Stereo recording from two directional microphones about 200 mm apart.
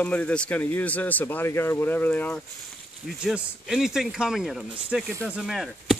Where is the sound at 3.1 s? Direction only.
5° right (ahead or behind).